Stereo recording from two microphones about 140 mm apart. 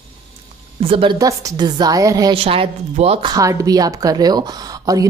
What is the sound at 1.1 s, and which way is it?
Speech, 25° right (ahead or behind).